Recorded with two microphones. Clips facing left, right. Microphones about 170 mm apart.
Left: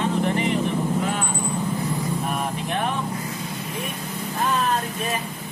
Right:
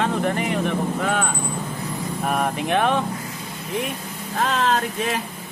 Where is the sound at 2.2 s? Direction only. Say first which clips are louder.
Right 4 dB; 65° right (ahead or behind); by 3.0 s 80° right.